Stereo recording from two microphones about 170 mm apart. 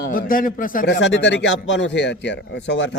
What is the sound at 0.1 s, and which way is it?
Speech, 55° left (ahead or behind).